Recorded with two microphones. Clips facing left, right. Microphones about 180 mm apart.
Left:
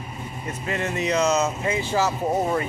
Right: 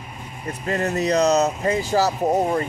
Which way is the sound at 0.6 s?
40° right (ahead or behind).